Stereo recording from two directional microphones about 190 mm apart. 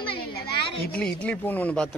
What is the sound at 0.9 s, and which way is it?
Speech, 5° left (ahead or behind).